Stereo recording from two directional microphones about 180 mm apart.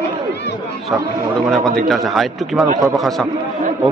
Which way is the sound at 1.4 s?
Centre (ahead or behind).